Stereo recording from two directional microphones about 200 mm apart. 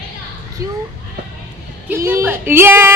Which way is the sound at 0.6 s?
15° right (ahead or behind).